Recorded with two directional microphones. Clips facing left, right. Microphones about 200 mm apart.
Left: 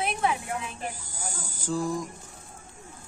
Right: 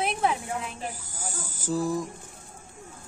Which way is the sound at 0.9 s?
5° right (ahead or behind).